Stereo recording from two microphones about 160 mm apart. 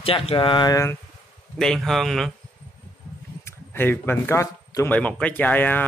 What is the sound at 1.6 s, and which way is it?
Speech, centre (ahead or behind).